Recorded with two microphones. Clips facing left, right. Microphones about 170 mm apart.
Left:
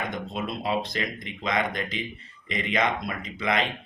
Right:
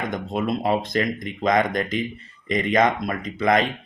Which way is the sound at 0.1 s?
50° right (ahead or behind).